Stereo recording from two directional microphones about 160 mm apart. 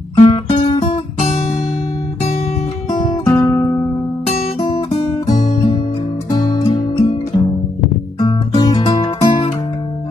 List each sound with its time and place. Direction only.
0.2 s guitar: 30° left (ahead or behind)
2.9 s guitar: 30° left (ahead or behind)
3.3 s guitar: 15° left (ahead or behind)
3.5 s music: 30° left (ahead or behind)
6.3 s music: 25° left (ahead or behind)